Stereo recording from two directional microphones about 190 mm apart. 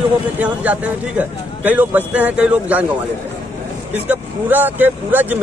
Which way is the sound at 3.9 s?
10° right (ahead or behind).